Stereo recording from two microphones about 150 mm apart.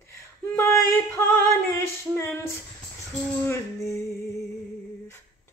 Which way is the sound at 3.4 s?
20° left (ahead or behind).